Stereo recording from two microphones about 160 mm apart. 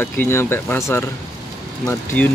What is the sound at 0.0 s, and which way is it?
Speech, 15° left (ahead or behind).